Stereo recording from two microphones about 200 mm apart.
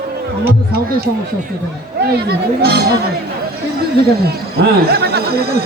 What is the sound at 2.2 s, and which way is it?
Speech, 50° right (ahead or behind).